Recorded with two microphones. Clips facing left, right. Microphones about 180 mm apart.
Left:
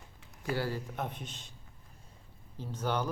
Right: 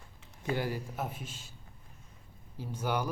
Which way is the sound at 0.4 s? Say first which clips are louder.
Right 1 dB; 20° right (ahead or behind).